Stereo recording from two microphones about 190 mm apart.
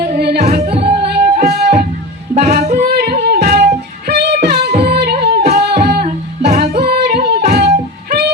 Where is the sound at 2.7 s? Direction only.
55° right (ahead or behind).